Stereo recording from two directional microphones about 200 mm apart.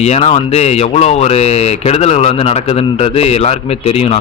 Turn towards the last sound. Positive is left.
turn(degrees=30)  # may be behind; listen again after turning